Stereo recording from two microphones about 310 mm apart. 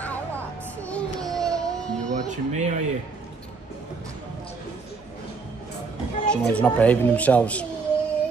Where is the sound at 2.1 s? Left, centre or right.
Right.